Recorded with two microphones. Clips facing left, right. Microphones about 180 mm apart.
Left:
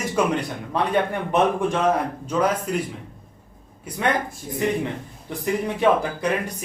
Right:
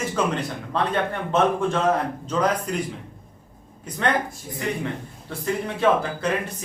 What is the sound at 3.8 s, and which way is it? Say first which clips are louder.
Speech: even; 10° left (ahead or behind).